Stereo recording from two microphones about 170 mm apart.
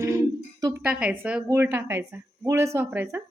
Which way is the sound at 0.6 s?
10° right (ahead or behind).